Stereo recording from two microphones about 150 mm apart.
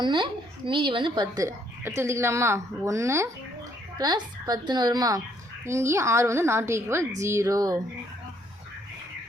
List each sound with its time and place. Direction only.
0.0 s speech: 30° right (ahead or behind)